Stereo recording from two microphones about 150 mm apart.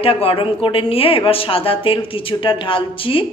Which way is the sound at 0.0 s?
40° left (ahead or behind).